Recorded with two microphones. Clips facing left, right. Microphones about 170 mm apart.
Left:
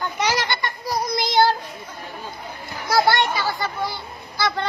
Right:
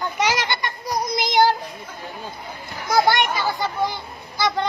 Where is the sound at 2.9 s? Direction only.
15° right (ahead or behind).